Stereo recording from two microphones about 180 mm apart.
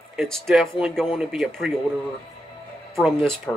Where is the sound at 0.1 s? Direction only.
Centre (ahead or behind).